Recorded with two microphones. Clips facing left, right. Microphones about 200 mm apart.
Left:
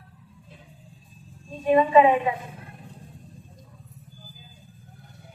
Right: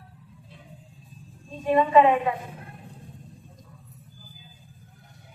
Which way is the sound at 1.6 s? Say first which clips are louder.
Left 1 dB; 15° left (ahead or behind).